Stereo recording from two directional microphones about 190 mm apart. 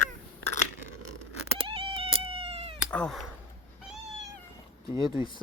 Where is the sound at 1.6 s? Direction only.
30° right (ahead or behind).